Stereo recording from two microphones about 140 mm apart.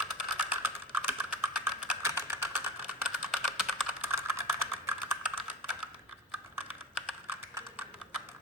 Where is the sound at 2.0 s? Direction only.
15° right (ahead or behind).